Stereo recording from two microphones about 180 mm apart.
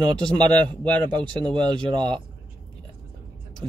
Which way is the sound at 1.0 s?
25° right (ahead or behind).